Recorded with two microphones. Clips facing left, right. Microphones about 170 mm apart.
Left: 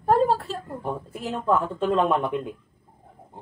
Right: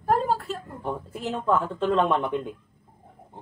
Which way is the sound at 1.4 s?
Centre (ahead or behind).